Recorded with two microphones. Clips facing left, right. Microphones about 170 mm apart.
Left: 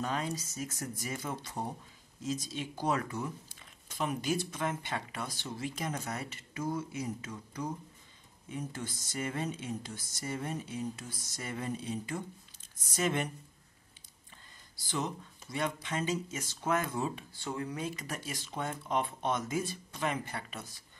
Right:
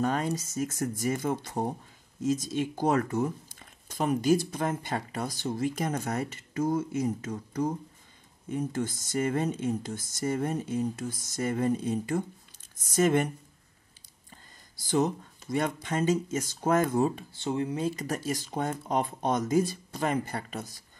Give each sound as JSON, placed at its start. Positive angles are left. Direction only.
{"t": 0.0, "sound": "speech", "side_deg": -45}
{"t": 14.8, "sound": "speech", "side_deg": -45}
{"t": 17.3, "sound": "speech", "side_deg": -25}